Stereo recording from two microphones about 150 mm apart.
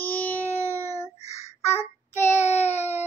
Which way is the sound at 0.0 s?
10° left (ahead or behind).